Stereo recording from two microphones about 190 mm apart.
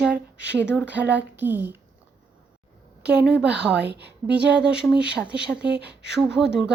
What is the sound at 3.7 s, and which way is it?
Speech, 65° right (ahead or behind).